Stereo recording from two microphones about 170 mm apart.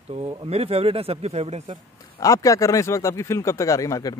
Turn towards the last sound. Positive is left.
turn(degrees=20)  # may be behind; listen again after turning